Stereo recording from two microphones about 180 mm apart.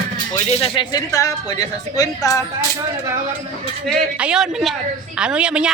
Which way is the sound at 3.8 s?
5° right (ahead or behind).